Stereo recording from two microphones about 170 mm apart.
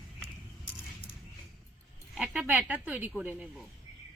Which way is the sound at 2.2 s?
5° right (ahead or behind).